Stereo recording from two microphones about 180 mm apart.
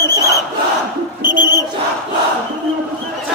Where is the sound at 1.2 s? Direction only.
25° left (ahead or behind).